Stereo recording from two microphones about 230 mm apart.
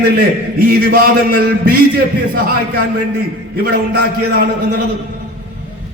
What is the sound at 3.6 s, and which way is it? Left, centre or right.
A man's voice, right.